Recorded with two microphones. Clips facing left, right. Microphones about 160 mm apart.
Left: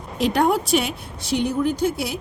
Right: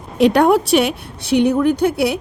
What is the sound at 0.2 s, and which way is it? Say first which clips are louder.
A woman's voice: right 7 dB; 70° right (ahead or behind).